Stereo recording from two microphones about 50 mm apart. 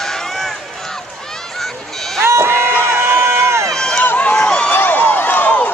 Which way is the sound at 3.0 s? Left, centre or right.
Right.